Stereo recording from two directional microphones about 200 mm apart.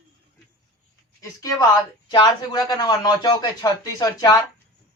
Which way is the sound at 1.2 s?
15° left (ahead or behind).